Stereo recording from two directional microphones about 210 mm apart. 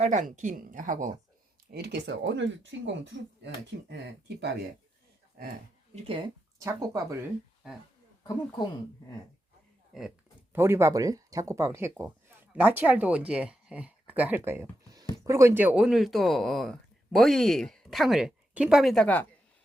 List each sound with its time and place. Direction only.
0.0 s speech: 35° right (ahead or behind)
1.7 s speech: 50° right (ahead or behind)
5.9 s speech: 25° right (ahead or behind)
6.6 s speech: 15° right (ahead or behind)
9.9 s speech: centre (ahead or behind)
10.5 s speech: 10° right (ahead or behind); by 19.2 s 5° left (ahead or behind)